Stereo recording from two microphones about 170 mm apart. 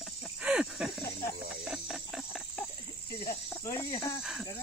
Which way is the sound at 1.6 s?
5° right (ahead or behind).